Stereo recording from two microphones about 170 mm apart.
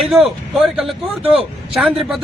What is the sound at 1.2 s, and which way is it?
Speech, 35° right (ahead or behind).